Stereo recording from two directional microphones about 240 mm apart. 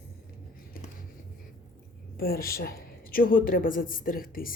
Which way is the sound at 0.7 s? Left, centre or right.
Left.